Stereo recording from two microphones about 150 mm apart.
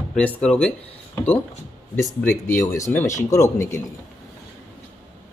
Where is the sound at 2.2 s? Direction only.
15° left (ahead or behind).